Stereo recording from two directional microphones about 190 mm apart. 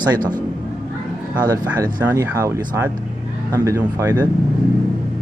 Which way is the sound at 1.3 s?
20° right (ahead or behind).